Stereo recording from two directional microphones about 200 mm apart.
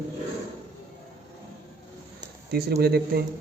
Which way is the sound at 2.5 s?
50° right (ahead or behind).